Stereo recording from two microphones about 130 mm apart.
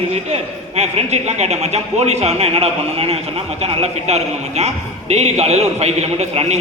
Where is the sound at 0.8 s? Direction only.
60° right (ahead or behind).